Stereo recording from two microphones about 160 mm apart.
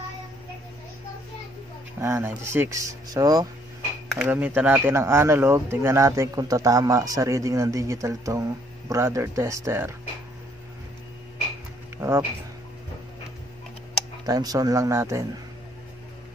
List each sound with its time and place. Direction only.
2.0 s speech: 15° right (ahead or behind)
4.1 s speech: 5° right (ahead or behind)
12.0 s speech: 15° right (ahead or behind)
14.2 s speech: 25° right (ahead or behind)